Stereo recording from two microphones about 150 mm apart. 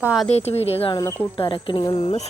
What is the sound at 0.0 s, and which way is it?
Speech, 5° right (ahead or behind).